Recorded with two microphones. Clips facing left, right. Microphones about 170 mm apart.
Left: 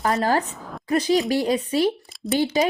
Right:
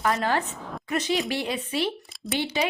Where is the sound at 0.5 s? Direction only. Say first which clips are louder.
Even; centre (ahead or behind).